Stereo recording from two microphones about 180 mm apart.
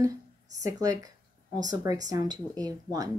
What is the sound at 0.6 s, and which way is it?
Speech, 20° right (ahead or behind).